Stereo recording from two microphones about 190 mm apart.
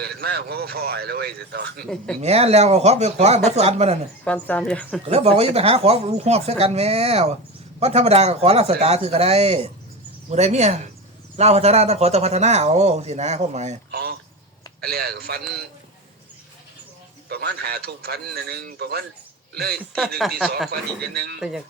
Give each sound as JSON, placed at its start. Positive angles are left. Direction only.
{"t": 0.0, "sound": "speech", "side_deg": -55}
{"t": 2.2, "sound": "a man's voice", "side_deg": -35}
{"t": 4.2, "sound": "speech", "side_deg": 10}
{"t": 5.0, "sound": "a man's voice", "side_deg": -30}
{"t": 13.9, "sound": "speech", "side_deg": -55}
{"t": 17.2, "sound": "speech", "side_deg": -60}
{"t": 20.0, "sound": "speech", "side_deg": 0}
{"t": 20.7, "sound": "speech", "side_deg": -55}
{"t": 21.3, "sound": "speech", "side_deg": 0}